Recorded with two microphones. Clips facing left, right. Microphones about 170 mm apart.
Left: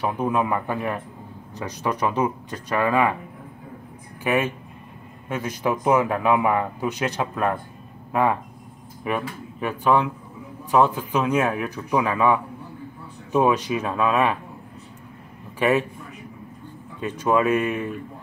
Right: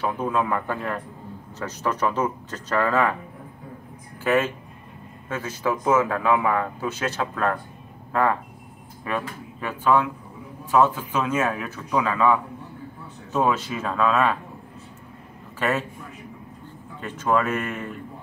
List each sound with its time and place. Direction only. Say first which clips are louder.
0.0 s speech: left 1 dB; 15° left (ahead or behind)
4.2 s speech: right 1 dB; 15° left (ahead or behind)
15.6 s speech: left 4 dB; 15° left (ahead or behind)
17.0 s speech: left 2 dB; 15° left (ahead or behind)